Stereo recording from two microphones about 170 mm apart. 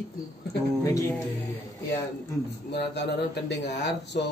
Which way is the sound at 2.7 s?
85° left.